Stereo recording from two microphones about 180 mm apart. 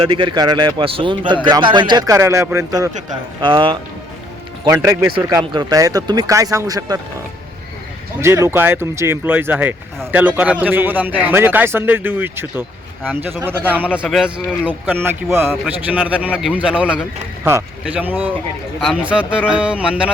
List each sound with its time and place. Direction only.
0.0 s speech: 25° right (ahead or behind)
4.6 s speech: 15° right (ahead or behind)
8.2 s a man's voice: 15° right (ahead or behind)